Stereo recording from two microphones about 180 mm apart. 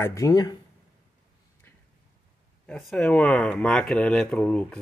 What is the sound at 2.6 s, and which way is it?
Speech, 5° left (ahead or behind).